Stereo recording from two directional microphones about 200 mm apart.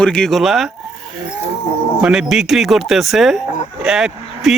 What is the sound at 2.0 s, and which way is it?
Speech, 5° right (ahead or behind).